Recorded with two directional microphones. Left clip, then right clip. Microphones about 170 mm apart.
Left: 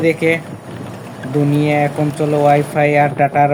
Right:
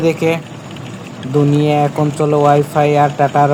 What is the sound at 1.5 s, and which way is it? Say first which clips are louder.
Speech: left 1 dB; 15° right (ahead or behind).